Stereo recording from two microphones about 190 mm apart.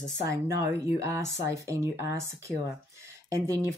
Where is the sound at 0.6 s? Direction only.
15° right (ahead or behind).